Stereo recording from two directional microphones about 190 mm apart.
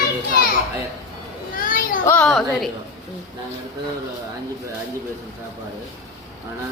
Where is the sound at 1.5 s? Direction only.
45° left (ahead or behind).